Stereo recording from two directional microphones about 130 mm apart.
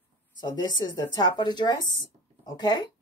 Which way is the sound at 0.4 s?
35° left (ahead or behind).